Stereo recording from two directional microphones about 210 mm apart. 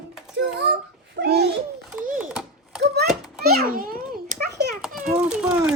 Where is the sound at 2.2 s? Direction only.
5° right (ahead or behind).